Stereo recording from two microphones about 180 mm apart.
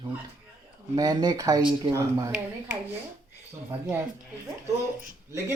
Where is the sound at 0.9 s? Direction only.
20° right (ahead or behind).